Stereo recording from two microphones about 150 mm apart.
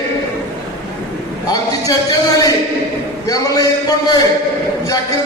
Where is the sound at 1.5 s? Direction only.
25° left (ahead or behind).